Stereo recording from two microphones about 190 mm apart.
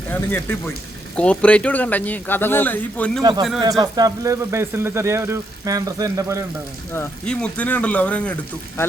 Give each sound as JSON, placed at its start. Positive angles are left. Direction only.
{"t": 0.1, "sound": "speech", "side_deg": 10}
{"t": 3.6, "sound": "speech", "side_deg": -20}
{"t": 6.9, "sound": "speech", "side_deg": 10}